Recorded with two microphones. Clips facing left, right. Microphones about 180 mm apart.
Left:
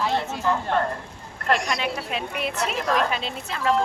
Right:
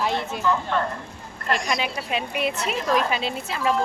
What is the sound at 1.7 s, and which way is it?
A woman's voice, 5° right (ahead or behind).